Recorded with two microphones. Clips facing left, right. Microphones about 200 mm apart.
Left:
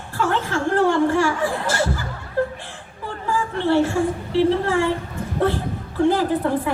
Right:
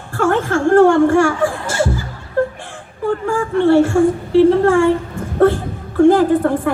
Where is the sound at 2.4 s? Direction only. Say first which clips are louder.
Right 5 dB; 50° right (ahead or behind).